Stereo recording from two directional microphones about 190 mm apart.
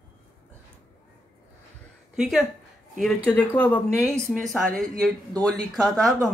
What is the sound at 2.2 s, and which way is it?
Speech, centre (ahead or behind).